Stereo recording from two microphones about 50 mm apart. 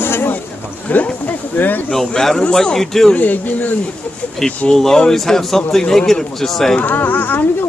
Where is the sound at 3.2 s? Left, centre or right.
Left.